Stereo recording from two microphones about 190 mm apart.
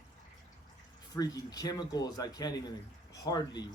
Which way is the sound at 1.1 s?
20° left (ahead or behind).